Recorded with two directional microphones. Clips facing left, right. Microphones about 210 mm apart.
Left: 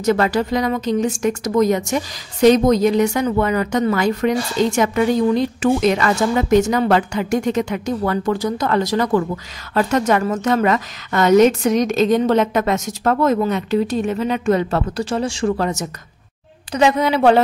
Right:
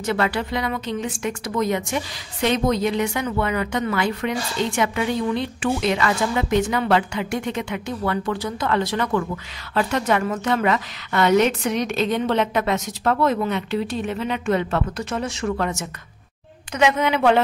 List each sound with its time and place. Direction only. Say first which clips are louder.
0.0 s a woman's voice: left 6 dB; 40° left (ahead or behind)